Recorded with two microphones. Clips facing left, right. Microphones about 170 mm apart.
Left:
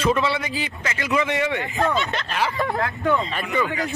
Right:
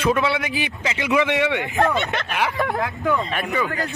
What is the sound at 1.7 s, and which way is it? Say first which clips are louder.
Speech: right 2 dB; 65° right (ahead or behind).